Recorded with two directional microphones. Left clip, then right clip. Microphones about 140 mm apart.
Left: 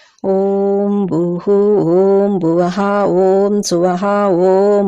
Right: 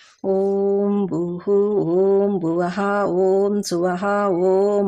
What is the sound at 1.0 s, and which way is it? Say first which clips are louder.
Mantra: left 7 dB; 40° left (ahead or behind).